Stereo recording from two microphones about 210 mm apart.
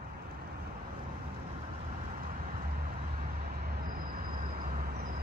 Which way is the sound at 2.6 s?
40° right (ahead or behind).